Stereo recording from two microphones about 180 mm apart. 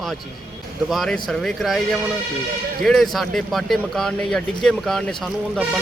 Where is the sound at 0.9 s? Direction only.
Centre (ahead or behind).